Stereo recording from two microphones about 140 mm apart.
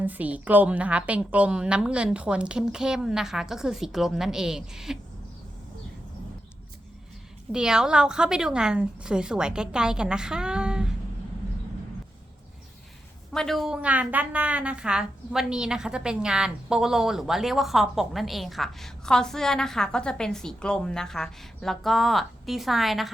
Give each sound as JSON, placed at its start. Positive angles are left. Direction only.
{"t": 0.0, "sound": "a woman's voice", "side_deg": -10}
{"t": 7.5, "sound": "a woman's voice", "side_deg": -5}
{"t": 13.3, "sound": "a woman's voice", "side_deg": 5}